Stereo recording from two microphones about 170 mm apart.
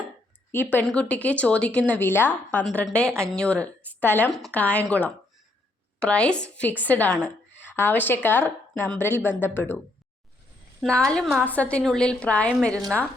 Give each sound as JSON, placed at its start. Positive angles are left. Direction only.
{"t": 0.5, "sound": "a woman's voice", "side_deg": 10}
{"t": 10.8, "sound": "a woman's voice", "side_deg": 5}